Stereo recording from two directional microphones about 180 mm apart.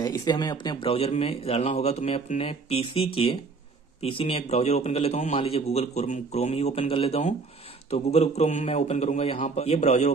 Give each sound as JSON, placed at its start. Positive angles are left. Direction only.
{"t": 0.0, "sound": "a man's voice", "side_deg": 20}